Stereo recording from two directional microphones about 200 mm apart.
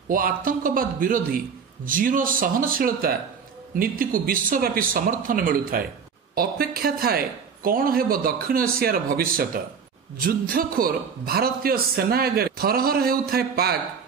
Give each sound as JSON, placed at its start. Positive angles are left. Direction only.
{"t": 0.1, "sound": "a man's voice", "side_deg": -45}